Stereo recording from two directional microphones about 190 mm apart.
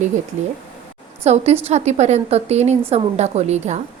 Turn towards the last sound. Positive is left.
turn(degrees=-35)  # may be behind; listen again after turning